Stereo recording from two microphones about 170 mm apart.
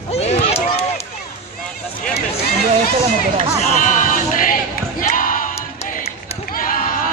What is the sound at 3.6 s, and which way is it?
Sheep, 50° left (ahead or behind).